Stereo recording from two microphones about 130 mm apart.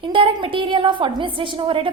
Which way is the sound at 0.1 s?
40° right (ahead or behind).